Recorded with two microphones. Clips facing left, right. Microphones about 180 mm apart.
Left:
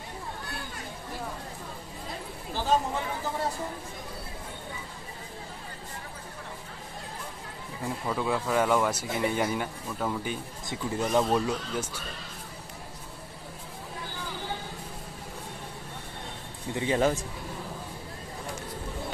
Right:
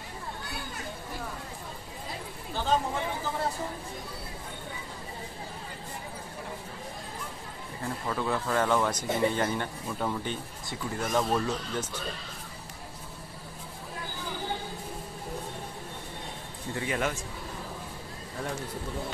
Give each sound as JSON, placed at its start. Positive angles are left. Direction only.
{"t": 7.8, "sound": "speech", "side_deg": 10}
{"t": 10.7, "sound": "speech", "side_deg": 15}
{"t": 16.7, "sound": "speech", "side_deg": 30}